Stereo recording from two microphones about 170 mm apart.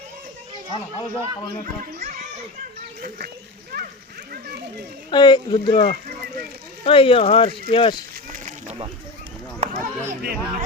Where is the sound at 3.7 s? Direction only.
75° right (ahead or behind).